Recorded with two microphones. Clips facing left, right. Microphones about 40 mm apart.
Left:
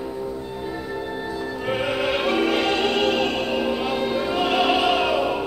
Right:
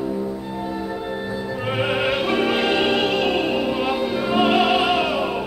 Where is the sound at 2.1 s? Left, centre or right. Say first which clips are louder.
Right 1 dB; centre.